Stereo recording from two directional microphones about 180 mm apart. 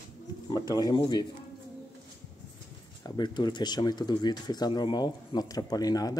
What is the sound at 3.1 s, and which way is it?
Speech, 25° left (ahead or behind).